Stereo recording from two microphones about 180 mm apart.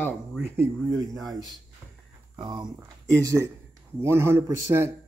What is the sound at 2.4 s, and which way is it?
Speech, 25° right (ahead or behind).